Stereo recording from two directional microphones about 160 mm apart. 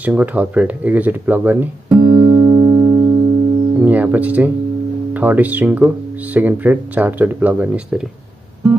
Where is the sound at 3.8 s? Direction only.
10° right (ahead or behind).